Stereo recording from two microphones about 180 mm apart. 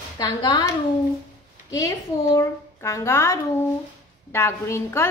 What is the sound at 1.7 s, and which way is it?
A woman's voice, 20° left (ahead or behind).